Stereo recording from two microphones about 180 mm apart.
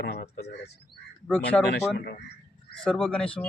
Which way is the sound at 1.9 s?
60° left (ahead or behind).